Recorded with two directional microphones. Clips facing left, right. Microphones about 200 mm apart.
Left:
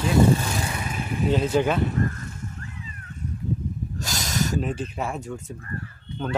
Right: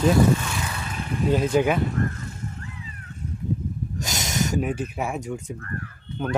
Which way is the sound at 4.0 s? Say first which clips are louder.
Even; 20° right (ahead or behind).